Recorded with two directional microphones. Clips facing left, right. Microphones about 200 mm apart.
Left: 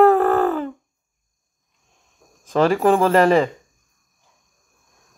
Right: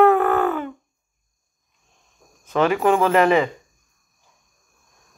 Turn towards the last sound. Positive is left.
turn(degrees=35)  # may be behind; listen again after turning